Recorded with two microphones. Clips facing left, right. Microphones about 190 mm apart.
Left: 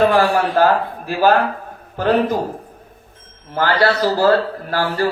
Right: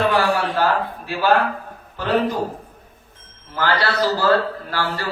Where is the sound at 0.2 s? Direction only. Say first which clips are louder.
Left 5 dB; 45° left (ahead or behind).